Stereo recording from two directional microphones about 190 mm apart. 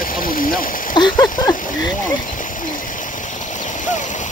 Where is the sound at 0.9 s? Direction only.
20° left (ahead or behind).